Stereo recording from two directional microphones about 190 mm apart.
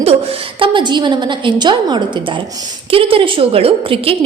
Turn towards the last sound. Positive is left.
turn(degrees=-30)  # may be behind; listen again after turning